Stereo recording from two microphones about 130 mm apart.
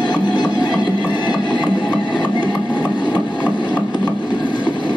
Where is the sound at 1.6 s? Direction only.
35° left (ahead or behind).